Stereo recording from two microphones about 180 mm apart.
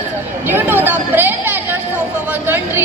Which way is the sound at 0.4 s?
10° right (ahead or behind).